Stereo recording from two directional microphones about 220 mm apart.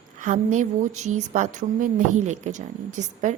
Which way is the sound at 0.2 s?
35° right (ahead or behind).